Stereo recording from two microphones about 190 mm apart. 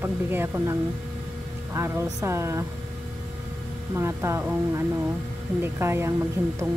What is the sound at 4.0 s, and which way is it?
Speech, 15° right (ahead or behind).